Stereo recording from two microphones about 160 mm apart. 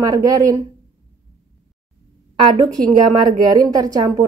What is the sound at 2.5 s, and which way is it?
Speech, 20° right (ahead or behind).